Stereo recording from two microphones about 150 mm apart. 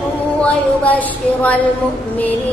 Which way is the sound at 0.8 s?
10° left (ahead or behind).